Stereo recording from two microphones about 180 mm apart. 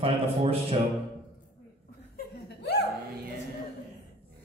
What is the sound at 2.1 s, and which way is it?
Laughter, 65° left (ahead or behind).